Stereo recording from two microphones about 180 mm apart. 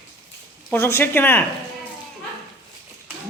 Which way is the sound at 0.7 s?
15° left (ahead or behind).